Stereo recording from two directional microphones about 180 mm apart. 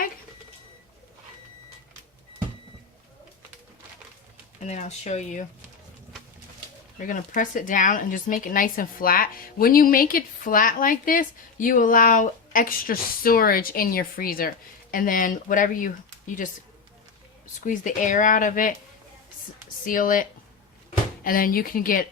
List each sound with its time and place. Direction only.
4.6 s speech: 40° left (ahead or behind)
7.1 s speech: 45° left (ahead or behind)
17.6 s speech: 45° left (ahead or behind)
19.8 s speech: 50° left (ahead or behind)
21.2 s speech: 55° left (ahead or behind)